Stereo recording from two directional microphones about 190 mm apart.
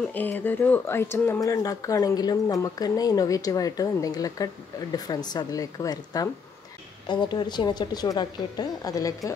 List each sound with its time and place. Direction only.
0.1 s a woman's voice: 10° left (ahead or behind)